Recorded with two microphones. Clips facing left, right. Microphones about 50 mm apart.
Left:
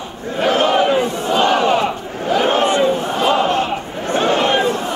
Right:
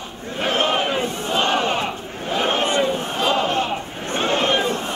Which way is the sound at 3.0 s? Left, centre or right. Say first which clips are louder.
Left 5 dB; left.